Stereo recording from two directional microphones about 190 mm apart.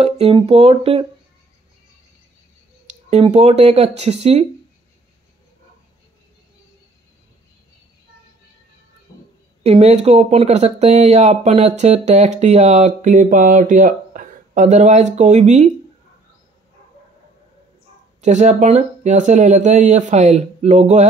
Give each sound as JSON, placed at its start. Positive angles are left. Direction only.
{"t": 0.0, "sound": "speech", "side_deg": -30}
{"t": 2.9, "sound": "speech", "side_deg": -35}
{"t": 9.6, "sound": "speech", "side_deg": -35}
{"t": 18.2, "sound": "speech", "side_deg": -40}